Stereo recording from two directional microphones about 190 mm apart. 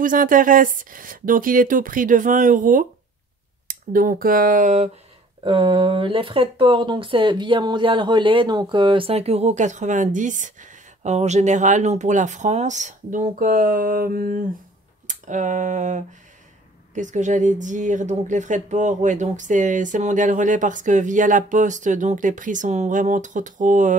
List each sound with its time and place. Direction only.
0.0 s speech: 45° right (ahead or behind)
5.4 s speech: 25° right (ahead or behind); by 24.0 s 40° right (ahead or behind)